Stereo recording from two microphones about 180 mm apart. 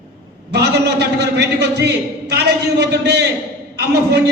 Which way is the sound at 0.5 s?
65° right (ahead or behind).